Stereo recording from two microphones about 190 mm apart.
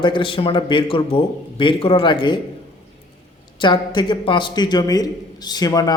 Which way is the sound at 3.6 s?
25° left (ahead or behind).